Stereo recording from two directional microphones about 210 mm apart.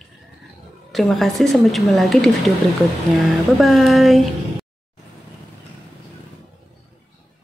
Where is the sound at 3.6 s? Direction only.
Centre (ahead or behind).